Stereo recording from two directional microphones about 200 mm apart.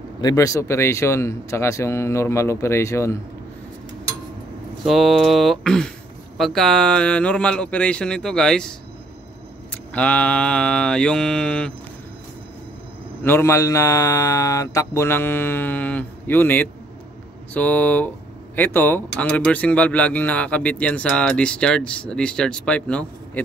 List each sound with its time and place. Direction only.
0.2 s speech: 20° left (ahead or behind)
4.8 s speech: centre (ahead or behind)
9.7 s speech: 5° left (ahead or behind)
13.2 s speech: 10° left (ahead or behind)